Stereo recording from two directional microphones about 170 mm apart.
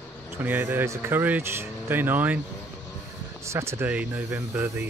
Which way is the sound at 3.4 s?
15° right (ahead or behind).